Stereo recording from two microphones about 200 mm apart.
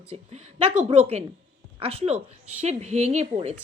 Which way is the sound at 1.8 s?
30° right (ahead or behind).